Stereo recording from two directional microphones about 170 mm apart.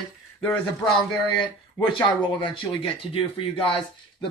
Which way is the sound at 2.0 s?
25° left (ahead or behind).